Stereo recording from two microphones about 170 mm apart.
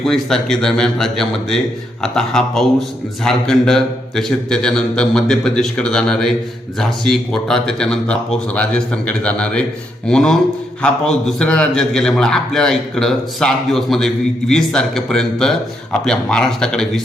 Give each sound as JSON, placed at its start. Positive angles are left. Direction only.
{"t": 0.0, "sound": "a man's voice", "side_deg": 5}